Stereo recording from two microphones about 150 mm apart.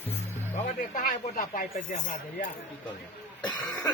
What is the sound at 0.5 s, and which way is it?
Music, 60° left (ahead or behind).